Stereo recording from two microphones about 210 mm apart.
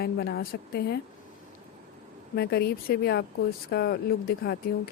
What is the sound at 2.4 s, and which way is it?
Speech, 50° left (ahead or behind).